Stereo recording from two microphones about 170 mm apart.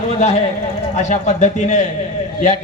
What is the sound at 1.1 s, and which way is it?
Speech, 45° left (ahead or behind).